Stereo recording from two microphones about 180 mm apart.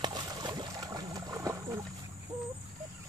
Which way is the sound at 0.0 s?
25° right (ahead or behind).